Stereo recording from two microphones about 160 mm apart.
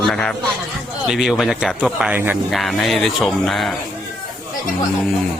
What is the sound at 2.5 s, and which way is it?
Speech, centre (ahead or behind).